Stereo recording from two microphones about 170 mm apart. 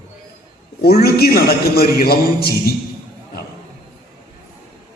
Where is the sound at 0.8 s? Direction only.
65° left (ahead or behind).